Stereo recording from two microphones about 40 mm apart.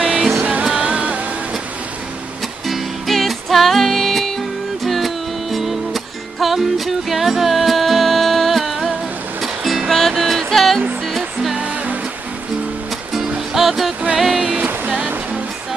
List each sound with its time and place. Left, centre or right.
0.4 s music: right
0.7 s music: right
2.6 s music: centre
11.6 s music: right
13.5 s music: centre